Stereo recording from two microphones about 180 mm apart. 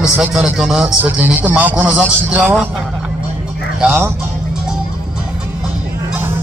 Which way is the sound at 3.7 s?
10° right (ahead or behind).